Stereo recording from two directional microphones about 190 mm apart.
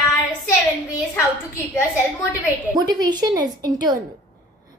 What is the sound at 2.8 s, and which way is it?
A woman's voice, 20° right (ahead or behind).